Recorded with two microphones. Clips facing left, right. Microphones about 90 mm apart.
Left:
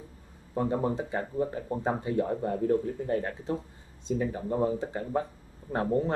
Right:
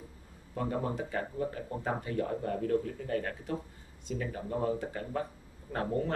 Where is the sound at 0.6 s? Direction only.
25° left (ahead or behind).